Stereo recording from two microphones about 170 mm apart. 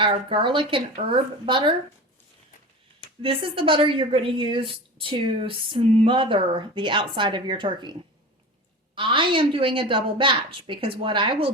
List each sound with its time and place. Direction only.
0.0 s speech: 30° right (ahead or behind)
3.2 s speech: 30° right (ahead or behind)
9.0 s a woman's voice: 30° right (ahead or behind)